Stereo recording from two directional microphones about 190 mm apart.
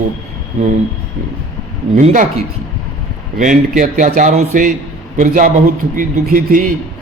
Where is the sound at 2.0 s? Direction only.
40° right (ahead or behind).